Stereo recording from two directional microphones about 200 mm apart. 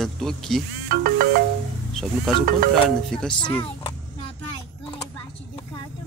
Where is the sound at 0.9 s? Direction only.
45° right (ahead or behind).